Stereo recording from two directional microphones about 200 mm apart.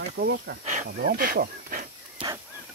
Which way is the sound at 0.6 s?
40° right (ahead or behind).